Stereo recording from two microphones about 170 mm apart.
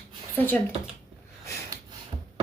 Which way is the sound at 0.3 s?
10° left (ahead or behind).